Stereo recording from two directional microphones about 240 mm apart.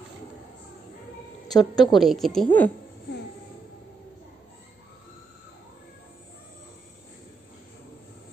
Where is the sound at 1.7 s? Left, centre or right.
Centre.